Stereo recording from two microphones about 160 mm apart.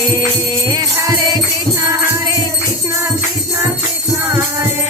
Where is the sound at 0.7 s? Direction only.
25° right (ahead or behind).